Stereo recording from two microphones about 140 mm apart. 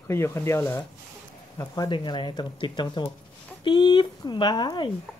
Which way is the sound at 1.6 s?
25° left (ahead or behind).